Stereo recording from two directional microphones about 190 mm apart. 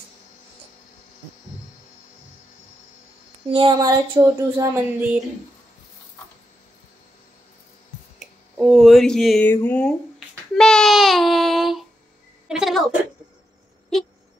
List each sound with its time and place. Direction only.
3.5 s speech: 25° right (ahead or behind); by 5.2 s 10° right (ahead or behind)
8.2 s speech: 5° right (ahead or behind)
10.5 s child singing: 5° left (ahead or behind)
12.4 s a woman's voice: centre (ahead or behind)